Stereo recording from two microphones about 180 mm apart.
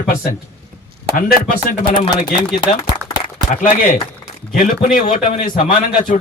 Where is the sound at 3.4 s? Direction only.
45° left (ahead or behind).